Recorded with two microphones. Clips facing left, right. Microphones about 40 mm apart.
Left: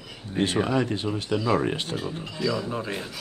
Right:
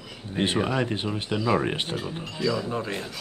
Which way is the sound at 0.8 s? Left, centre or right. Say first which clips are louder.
Left 1 dB; right.